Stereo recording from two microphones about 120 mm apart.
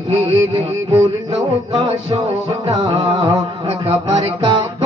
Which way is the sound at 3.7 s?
55° right (ahead or behind).